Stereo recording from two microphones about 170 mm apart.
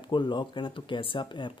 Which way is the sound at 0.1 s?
25° left (ahead or behind).